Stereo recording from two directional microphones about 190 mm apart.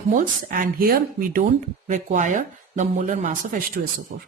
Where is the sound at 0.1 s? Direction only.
45° right (ahead or behind).